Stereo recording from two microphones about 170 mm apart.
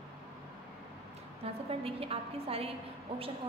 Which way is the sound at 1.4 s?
35° right (ahead or behind).